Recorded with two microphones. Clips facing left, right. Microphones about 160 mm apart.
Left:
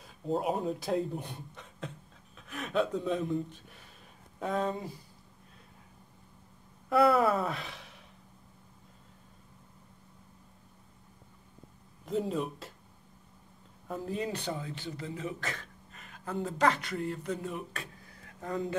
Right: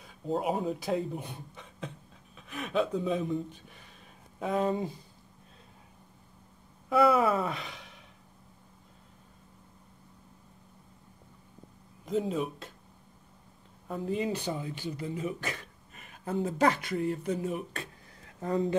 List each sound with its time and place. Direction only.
0.0 s speech: centre (ahead or behind)
4.6 s speech: 20° right (ahead or behind)
6.9 s speech: centre (ahead or behind)
12.1 s speech: centre (ahead or behind)
13.8 s speech: centre (ahead or behind)
14.5 s speech: 15° right (ahead or behind)
18.4 s a man's voice: 30° right (ahead or behind)